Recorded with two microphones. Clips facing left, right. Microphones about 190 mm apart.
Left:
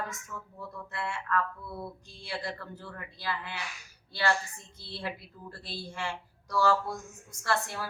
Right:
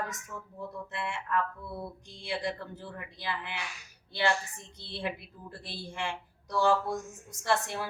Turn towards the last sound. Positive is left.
turn(degrees=-20)  # may be behind; listen again after turning